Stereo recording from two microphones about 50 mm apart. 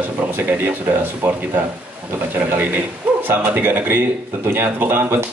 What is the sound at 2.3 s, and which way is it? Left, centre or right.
A man's voice, right.